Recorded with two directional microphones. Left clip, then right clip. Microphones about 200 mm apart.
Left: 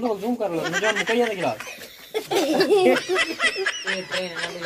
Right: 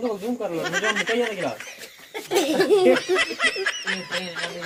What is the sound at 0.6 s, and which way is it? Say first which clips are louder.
Snicker: right 1 dB; centre (ahead or behind).